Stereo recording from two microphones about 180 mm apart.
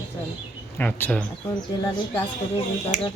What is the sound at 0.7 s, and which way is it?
Speech, 10° left (ahead or behind).